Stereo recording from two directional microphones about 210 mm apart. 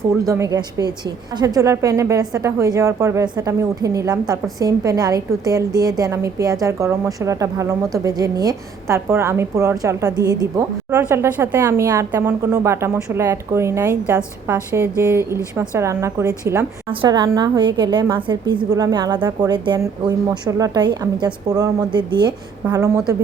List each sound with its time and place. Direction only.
0.3 s a woman's voice: 15° right (ahead or behind)